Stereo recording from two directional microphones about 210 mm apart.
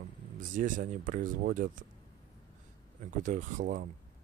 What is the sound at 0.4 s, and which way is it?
Speech, 40° right (ahead or behind).